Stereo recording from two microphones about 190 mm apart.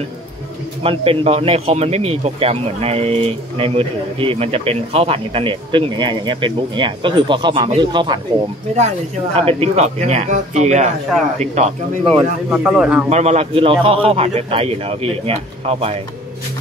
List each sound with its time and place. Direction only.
0.8 s a man's voice: 30° right (ahead or behind)
9.4 s a man's voice: 30° right (ahead or behind)
12.0 s speech: centre (ahead or behind)
13.1 s a man's voice: 35° right (ahead or behind)